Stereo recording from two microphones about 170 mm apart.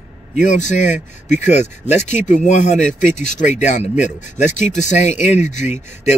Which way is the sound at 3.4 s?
45° left (ahead or behind).